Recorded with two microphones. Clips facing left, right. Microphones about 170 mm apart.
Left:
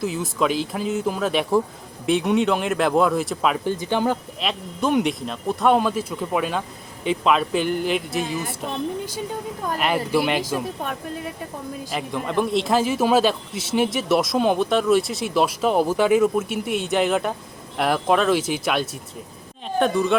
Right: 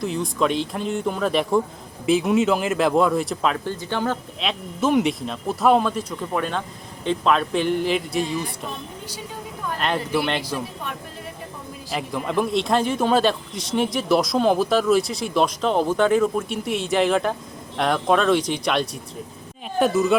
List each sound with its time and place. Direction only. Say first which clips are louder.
0.0 s a man's voice: even; 5° left (ahead or behind)
3.6 s speech: left 3 dB; 15° left (ahead or behind)
4.4 s a man's voice: even; centre (ahead or behind)
9.7 s speech: left 2 dB; 10° left (ahead or behind)
11.9 s a man's voice: right 2 dB; centre (ahead or behind)